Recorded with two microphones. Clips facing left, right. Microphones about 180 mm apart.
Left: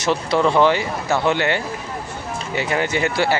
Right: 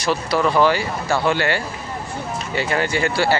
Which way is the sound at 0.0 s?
25° left (ahead or behind).